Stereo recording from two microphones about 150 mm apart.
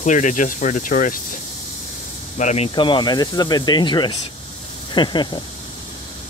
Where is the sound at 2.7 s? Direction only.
30° left (ahead or behind).